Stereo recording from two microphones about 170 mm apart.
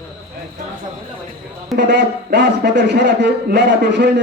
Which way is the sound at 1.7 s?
85° right.